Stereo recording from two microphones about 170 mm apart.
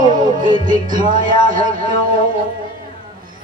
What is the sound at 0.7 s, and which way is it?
Music, 50° right (ahead or behind).